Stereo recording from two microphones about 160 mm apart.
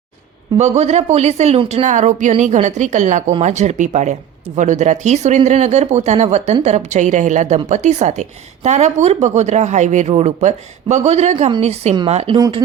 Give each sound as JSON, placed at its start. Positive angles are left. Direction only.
{"t": 0.5, "sound": "a woman's voice", "side_deg": -40}